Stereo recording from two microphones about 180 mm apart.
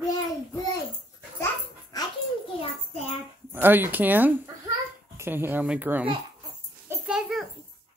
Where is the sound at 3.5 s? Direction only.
10° right (ahead or behind).